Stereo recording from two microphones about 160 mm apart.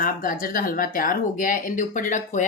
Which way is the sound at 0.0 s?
60° left (ahead or behind).